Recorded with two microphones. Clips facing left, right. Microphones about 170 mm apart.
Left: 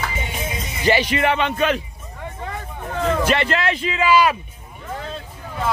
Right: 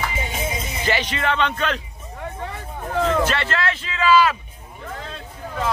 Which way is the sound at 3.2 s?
15° left (ahead or behind).